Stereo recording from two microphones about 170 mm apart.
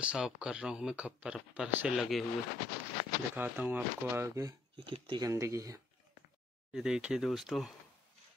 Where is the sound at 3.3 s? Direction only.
10° right (ahead or behind); by 5.3 s 30° right (ahead or behind).